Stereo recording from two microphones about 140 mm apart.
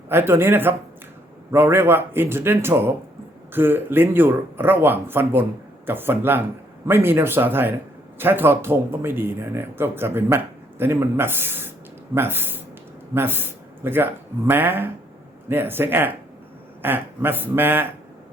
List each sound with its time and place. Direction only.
0.1 s speech: 15° right (ahead or behind)